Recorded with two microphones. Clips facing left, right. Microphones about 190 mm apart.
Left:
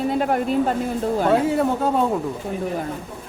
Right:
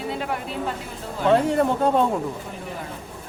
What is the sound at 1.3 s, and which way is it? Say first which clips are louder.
Speech: right 3 dB; 5° left (ahead or behind).